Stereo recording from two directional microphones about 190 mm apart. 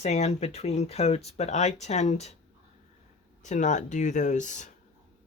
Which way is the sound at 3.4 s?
40° left (ahead or behind).